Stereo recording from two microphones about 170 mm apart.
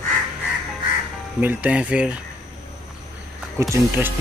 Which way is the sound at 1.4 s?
10° right (ahead or behind).